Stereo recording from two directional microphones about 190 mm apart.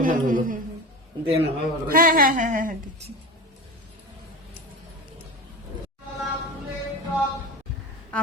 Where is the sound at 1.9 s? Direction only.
45° right (ahead or behind).